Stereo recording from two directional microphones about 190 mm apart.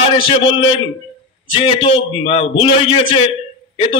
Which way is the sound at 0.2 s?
30° left (ahead or behind).